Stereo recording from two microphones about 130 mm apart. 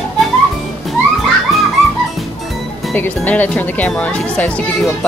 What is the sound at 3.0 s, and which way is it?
A child's voice, 15° left (ahead or behind).